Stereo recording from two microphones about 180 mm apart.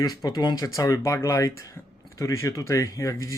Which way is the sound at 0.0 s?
20° left (ahead or behind).